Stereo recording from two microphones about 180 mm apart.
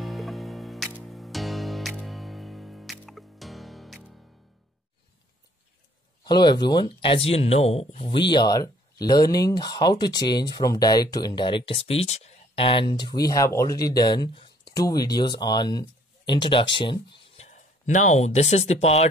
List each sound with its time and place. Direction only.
0.0 s music: centre (ahead or behind)
6.2 s speech: 25° left (ahead or behind)